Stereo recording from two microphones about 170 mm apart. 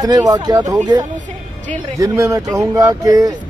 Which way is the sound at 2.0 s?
20° right (ahead or behind).